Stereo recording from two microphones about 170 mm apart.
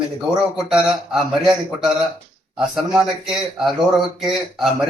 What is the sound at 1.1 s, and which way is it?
Speech, 5° right (ahead or behind).